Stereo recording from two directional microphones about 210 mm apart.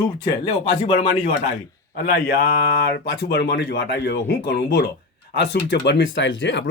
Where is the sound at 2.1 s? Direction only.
50° left (ahead or behind).